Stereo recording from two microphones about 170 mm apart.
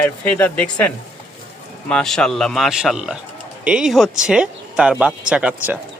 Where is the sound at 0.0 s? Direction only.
10° left (ahead or behind); by 5.8 s 10° right (ahead or behind).